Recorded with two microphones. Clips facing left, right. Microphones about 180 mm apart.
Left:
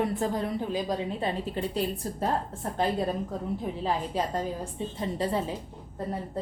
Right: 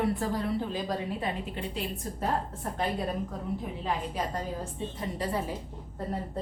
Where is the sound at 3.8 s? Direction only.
30° left (ahead or behind).